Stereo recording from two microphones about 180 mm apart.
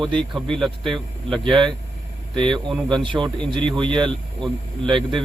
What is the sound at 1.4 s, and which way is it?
Speech, 25° right (ahead or behind).